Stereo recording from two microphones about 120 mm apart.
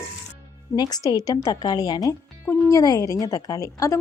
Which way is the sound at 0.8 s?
35° left (ahead or behind).